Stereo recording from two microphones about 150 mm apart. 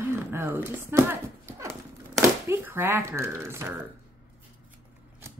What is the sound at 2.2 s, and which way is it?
Speech, 15° right (ahead or behind).